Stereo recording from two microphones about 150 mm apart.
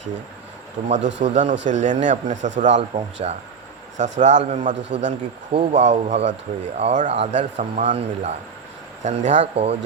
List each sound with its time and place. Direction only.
0.9 s speech: 50° right (ahead or behind)